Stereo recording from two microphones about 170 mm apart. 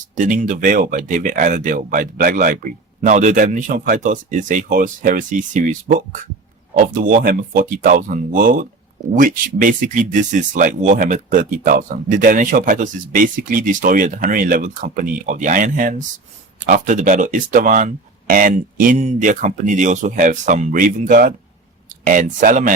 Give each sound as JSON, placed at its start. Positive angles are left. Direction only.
{"t": 0.2, "sound": "speech", "side_deg": -50}